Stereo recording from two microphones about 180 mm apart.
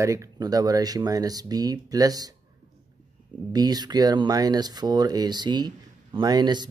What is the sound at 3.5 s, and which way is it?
Speech, 20° right (ahead or behind).